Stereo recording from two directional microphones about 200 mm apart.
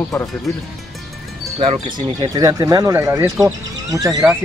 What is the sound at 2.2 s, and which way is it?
Speech, 20° right (ahead or behind).